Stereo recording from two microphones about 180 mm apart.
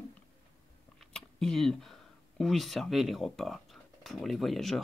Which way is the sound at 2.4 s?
Centre (ahead or behind).